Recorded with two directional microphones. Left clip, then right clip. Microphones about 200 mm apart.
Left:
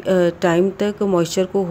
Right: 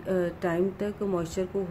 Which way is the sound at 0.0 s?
45° left (ahead or behind).